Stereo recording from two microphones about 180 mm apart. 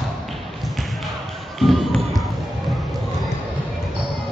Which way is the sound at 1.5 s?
Centre (ahead or behind).